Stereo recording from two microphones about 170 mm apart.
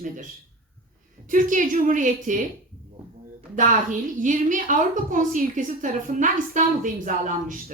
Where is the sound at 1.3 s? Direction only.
50° right (ahead or behind).